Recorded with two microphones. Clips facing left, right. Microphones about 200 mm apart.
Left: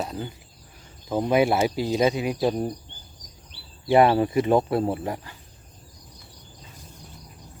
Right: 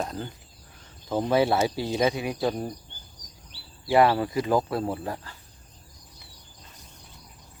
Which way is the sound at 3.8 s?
20° left (ahead or behind).